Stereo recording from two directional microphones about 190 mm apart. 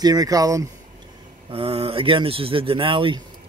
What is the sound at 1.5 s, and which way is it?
Speech, 30° right (ahead or behind).